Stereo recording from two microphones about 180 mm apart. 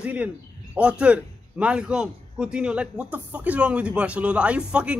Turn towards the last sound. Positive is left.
turn(degrees=-5)  # may be behind; listen again after turning